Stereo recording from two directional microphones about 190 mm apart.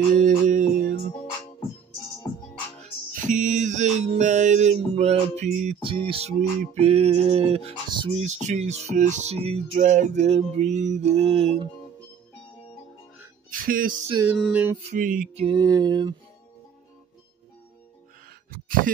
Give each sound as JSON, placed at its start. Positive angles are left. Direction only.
{"t": 0.1, "sound": "music", "side_deg": -40}
{"t": 3.1, "sound": "music", "side_deg": -45}
{"t": 5.8, "sound": "speech", "side_deg": -25}
{"t": 13.5, "sound": "music", "side_deg": -45}
{"t": 14.4, "sound": "a sound", "side_deg": -10}
{"t": 14.8, "sound": "music", "side_deg": -40}
{"t": 15.3, "sound": "a sound", "side_deg": -25}